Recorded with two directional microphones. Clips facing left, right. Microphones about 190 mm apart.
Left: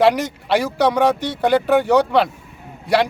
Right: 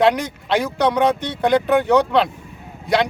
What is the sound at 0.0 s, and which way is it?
Speech, 5° left (ahead or behind).